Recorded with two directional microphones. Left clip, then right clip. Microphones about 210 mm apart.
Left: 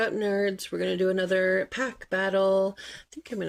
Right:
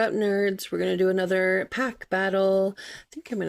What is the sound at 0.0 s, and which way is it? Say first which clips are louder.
Speech: right 2 dB; 30° right (ahead or behind).